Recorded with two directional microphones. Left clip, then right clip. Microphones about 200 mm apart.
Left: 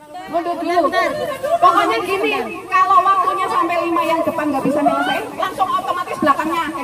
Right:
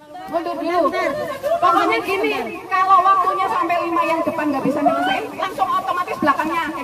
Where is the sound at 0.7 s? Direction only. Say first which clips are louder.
Left 3 dB; 40° left (ahead or behind).